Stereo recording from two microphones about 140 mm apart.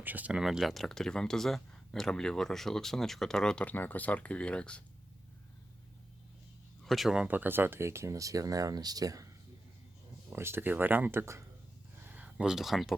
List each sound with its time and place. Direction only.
0.0 s speech: 10° right (ahead or behind); by 4.8 s 10° left (ahead or behind)
6.8 s speech: centre (ahead or behind); by 11.4 s 20° right (ahead or behind)
11.9 s a sound: 10° right (ahead or behind)